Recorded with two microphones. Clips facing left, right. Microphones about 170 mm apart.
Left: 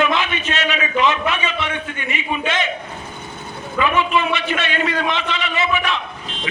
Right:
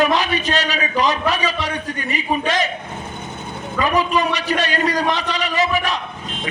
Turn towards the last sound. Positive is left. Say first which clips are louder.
# right 1 dB
turn(degrees=-40)  # may be behind; listen again after turning